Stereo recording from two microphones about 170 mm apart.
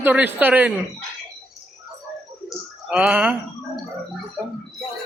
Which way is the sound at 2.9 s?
10° right (ahead or behind).